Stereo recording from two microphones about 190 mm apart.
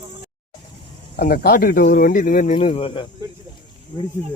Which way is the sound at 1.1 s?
50° left (ahead or behind).